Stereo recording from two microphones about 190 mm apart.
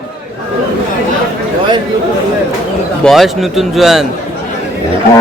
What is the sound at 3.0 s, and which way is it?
A man's voice, centre (ahead or behind).